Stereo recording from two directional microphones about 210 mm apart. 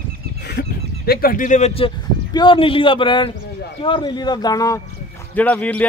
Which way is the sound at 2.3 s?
25° left (ahead or behind).